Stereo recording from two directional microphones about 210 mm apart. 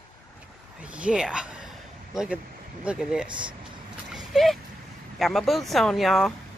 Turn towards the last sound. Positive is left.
turn(degrees=0)  # may be behind; listen again after turning